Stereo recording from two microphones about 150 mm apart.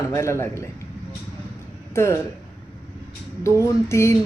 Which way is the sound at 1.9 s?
15° left (ahead or behind).